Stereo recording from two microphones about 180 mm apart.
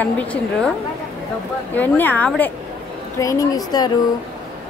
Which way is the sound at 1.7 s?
10° left (ahead or behind).